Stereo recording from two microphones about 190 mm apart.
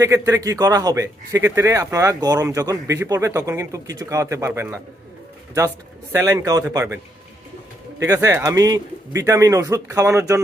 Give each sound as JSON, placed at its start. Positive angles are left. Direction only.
{"t": 0.0, "sound": "a man's voice", "side_deg": -15}